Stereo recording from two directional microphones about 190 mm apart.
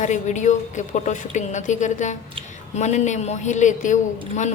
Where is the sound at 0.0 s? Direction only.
40° left (ahead or behind).